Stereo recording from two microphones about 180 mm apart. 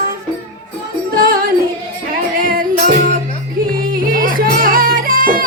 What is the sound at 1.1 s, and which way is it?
Music, 55° right (ahead or behind).